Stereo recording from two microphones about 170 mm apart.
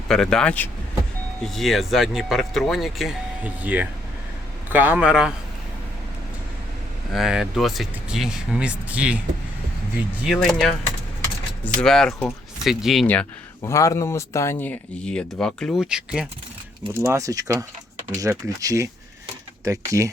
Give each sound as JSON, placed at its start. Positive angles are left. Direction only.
{"t": 0.1, "sound": "a man's voice", "side_deg": 5}
{"t": 7.1, "sound": "speech", "side_deg": -5}
{"t": 10.2, "sound": "speech", "side_deg": 0}
{"t": 13.6, "sound": "speech", "side_deg": 20}
{"t": 17.0, "sound": "speech", "side_deg": -15}